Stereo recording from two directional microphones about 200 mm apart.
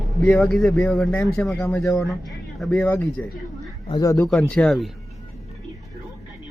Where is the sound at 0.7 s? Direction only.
5° left (ahead or behind).